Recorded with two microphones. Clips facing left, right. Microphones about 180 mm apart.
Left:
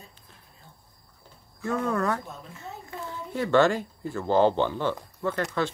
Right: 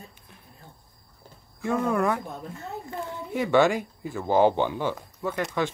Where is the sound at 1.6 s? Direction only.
10° right (ahead or behind).